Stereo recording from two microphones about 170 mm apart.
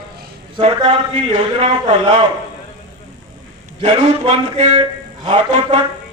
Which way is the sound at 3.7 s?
35° right (ahead or behind).